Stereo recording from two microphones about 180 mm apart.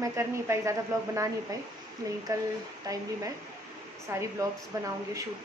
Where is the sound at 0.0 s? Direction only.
15° right (ahead or behind).